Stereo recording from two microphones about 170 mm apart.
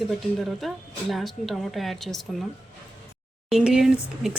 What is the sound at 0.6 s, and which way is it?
Speech, centre (ahead or behind).